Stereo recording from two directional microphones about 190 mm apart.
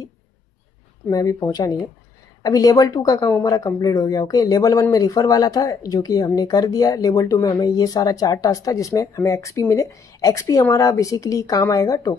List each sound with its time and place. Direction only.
1.0 s speech: 15° left (ahead or behind)